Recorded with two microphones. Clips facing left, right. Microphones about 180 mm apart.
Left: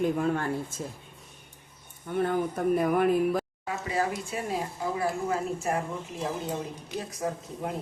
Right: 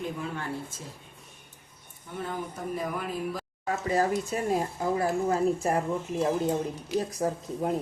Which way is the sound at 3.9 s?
40° right (ahead or behind).